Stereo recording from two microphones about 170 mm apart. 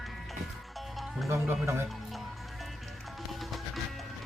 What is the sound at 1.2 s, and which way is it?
Speech, 15° right (ahead or behind).